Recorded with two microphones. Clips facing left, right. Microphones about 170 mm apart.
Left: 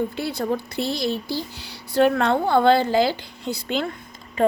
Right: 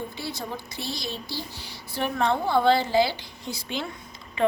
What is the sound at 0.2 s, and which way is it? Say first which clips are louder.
Speech: left 9 dB; 60° left (ahead or behind).